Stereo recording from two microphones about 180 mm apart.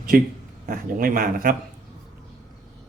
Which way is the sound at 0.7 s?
50° right (ahead or behind).